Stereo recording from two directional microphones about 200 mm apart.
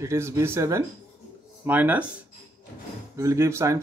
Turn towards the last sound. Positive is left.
turn(degrees=-15)  # may be behind; listen again after turning